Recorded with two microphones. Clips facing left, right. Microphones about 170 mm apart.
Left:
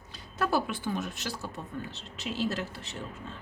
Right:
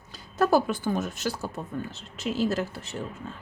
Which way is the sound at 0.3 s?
40° right (ahead or behind).